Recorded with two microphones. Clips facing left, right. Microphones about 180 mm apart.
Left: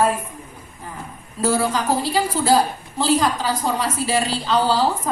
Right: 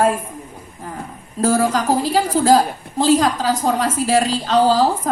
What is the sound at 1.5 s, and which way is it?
A woman's voice, 45° right (ahead or behind).